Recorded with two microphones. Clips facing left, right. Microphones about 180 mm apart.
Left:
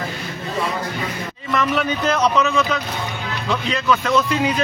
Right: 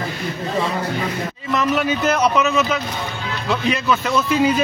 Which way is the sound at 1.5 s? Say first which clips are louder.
Right 1 dB; centre (ahead or behind).